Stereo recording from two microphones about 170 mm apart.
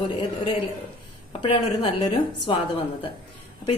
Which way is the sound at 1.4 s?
30° left (ahead or behind).